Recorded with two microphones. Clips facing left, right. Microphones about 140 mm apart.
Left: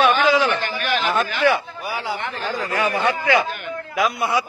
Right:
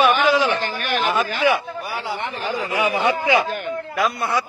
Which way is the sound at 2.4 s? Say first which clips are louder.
Right 1 dB; 10° right (ahead or behind).